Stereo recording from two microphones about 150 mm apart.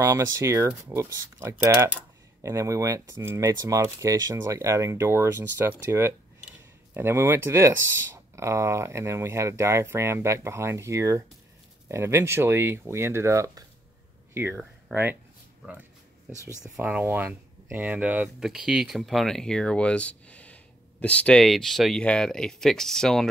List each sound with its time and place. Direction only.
0.0 s speech: 20° right (ahead or behind); by 23.3 s 5° left (ahead or behind)